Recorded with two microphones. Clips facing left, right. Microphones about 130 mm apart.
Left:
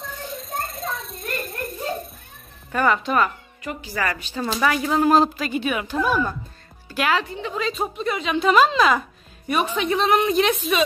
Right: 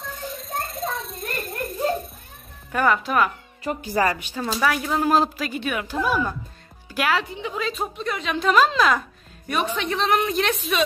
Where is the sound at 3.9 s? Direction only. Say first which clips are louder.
Right 4 dB; 20° right (ahead or behind).